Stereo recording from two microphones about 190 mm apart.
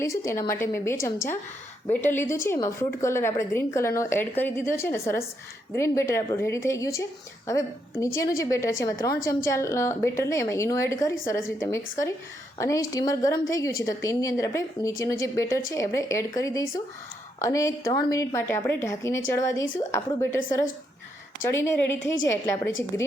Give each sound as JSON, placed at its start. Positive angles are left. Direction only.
{"t": 0.0, "sound": "a woman's voice", "side_deg": 15}
{"t": 12.5, "sound": "a woman's voice", "side_deg": 15}